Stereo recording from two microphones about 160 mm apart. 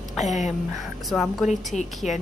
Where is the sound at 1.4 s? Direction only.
50° left (ahead or behind).